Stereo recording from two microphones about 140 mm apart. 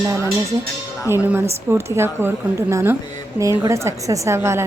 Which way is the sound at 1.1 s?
15° right (ahead or behind).